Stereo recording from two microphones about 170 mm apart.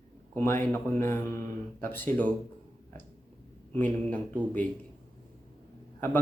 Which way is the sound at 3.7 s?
10° left (ahead or behind).